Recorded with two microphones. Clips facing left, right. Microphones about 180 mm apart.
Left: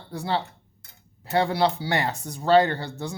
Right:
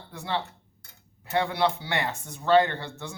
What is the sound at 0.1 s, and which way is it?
Speech, 35° left (ahead or behind).